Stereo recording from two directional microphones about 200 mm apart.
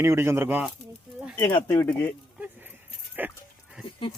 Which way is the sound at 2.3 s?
10° right (ahead or behind).